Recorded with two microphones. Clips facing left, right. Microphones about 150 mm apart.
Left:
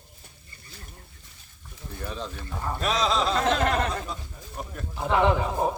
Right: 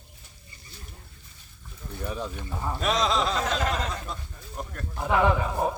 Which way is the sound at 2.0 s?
10° right (ahead or behind).